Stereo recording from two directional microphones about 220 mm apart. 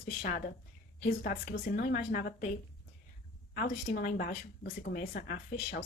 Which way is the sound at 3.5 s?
40° left (ahead or behind).